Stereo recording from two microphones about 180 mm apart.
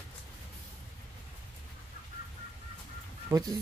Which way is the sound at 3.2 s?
20° right (ahead or behind).